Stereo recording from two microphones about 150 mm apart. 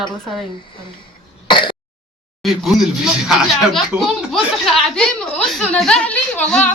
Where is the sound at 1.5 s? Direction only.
30° left (ahead or behind).